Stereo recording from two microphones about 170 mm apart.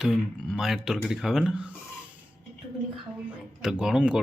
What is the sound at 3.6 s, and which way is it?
Speech, 5° right (ahead or behind).